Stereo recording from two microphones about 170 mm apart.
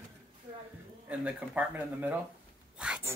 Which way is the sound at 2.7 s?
5° right (ahead or behind).